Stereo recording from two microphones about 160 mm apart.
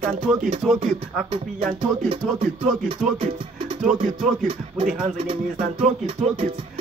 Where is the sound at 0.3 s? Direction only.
5° right (ahead or behind).